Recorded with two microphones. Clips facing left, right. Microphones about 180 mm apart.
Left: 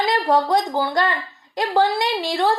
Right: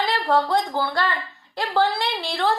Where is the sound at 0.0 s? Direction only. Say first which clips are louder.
Left 3 dB; 15° left (ahead or behind).